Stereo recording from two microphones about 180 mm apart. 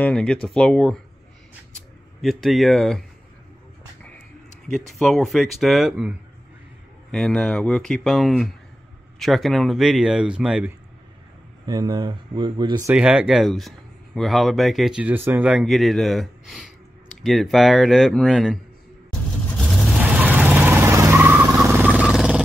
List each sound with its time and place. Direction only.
0.0 s speech: 5° left (ahead or behind)
2.2 s speech: centre (ahead or behind)
4.6 s speech: centre (ahead or behind)
11.6 s speech: 25° right (ahead or behind)
12.9 s speech: 5° right (ahead or behind)
19.5 s vehicle: centre (ahead or behind)